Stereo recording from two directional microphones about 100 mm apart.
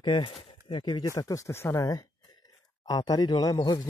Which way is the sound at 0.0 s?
55° left (ahead or behind).